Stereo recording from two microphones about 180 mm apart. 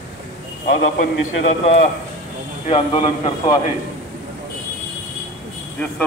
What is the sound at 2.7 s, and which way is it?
Speech, 30° left (ahead or behind).